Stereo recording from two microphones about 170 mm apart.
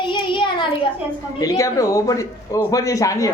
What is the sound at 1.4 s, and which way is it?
A man's voice, 20° left (ahead or behind).